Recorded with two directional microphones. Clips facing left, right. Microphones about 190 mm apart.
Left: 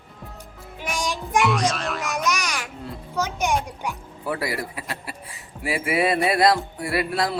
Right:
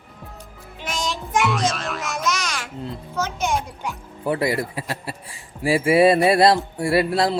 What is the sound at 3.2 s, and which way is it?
Speech, 15° left (ahead or behind).